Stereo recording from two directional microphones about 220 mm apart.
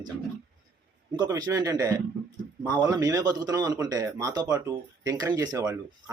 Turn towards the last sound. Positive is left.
turn(degrees=-15)  # may be behind; listen again after turning